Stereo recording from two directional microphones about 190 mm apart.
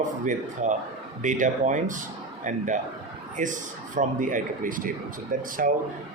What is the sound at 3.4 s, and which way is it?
Speech, 45° right (ahead or behind).